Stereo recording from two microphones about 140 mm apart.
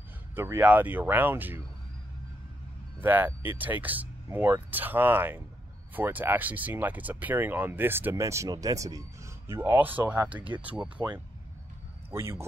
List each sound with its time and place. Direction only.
0.4 s speech: 15° right (ahead or behind)
3.0 s a man's voice: 15° right (ahead or behind)